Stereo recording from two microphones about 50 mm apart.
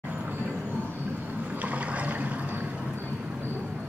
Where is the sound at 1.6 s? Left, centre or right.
Right.